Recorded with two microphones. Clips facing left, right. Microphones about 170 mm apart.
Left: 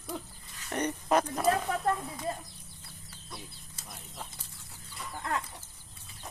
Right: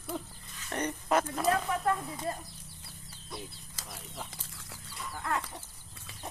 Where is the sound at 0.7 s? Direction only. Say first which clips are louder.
Left 2 dB; 20° left (ahead or behind).